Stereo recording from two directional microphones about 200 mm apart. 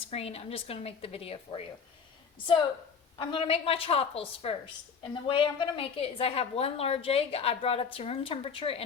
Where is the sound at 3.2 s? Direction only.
25° left (ahead or behind).